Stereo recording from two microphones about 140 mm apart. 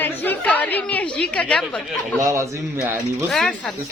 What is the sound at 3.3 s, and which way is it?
Speech, 10° left (ahead or behind).